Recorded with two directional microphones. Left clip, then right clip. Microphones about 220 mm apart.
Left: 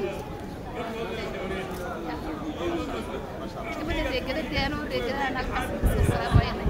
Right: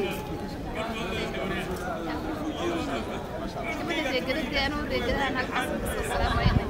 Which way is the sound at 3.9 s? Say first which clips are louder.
Even; 30° right (ahead or behind).